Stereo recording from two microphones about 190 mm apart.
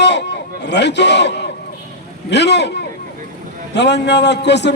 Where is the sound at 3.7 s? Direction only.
65° left (ahead or behind).